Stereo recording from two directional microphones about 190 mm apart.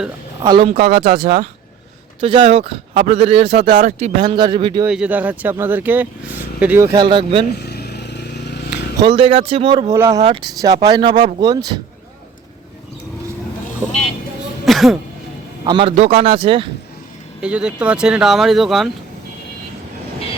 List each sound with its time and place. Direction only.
0.4 s speech: 25° right (ahead or behind)
0.8 s speech: 55° right (ahead or behind)
2.2 s speech: 30° right (ahead or behind)
3.8 s speech: 40° right (ahead or behind)
4.3 s speech: 25° right (ahead or behind)
4.9 s speech: 5° right (ahead or behind); by 7.4 s 25° right (ahead or behind)
7.6 s a sound: 60° left (ahead or behind)
9.0 s speech: 25° right (ahead or behind)
10.2 s speech: 30° right (ahead or behind)
10.6 s speech: 20° right (ahead or behind)
13.8 s speech: 10° right (ahead or behind)
14.6 s throat clearing: centre (ahead or behind)
15.6 s speech: 25° right (ahead or behind)
17.4 s speech: 5° right (ahead or behind)